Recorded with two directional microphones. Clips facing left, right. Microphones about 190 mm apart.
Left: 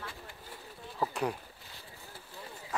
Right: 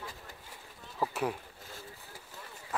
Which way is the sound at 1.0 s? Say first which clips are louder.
Even; centre (ahead or behind).